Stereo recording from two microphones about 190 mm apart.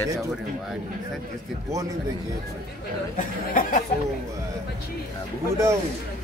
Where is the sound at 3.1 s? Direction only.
45° left (ahead or behind).